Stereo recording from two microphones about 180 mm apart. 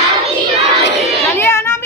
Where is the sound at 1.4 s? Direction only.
15° left (ahead or behind).